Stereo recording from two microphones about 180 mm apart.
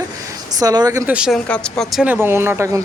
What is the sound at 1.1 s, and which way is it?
Speech, 5° right (ahead or behind).